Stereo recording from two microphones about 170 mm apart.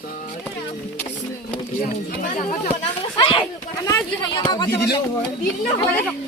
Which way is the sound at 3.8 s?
20° left (ahead or behind).